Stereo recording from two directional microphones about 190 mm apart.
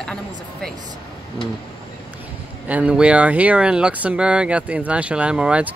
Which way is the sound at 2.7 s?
5° right (ahead or behind).